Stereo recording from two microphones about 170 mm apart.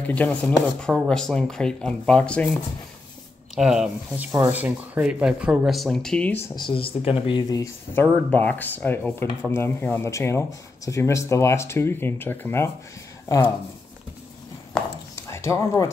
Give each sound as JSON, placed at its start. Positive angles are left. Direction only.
{"t": 0.0, "sound": "speech", "side_deg": 10}
{"t": 3.5, "sound": "speech", "side_deg": -5}
{"t": 6.5, "sound": "speech", "side_deg": 30}
{"t": 15.1, "sound": "a sound", "side_deg": 15}